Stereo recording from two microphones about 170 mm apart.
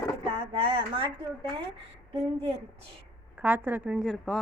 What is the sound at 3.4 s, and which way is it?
A woman's voice, 10° right (ahead or behind).